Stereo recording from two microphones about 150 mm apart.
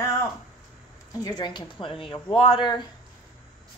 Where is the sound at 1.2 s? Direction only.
30° left (ahead or behind).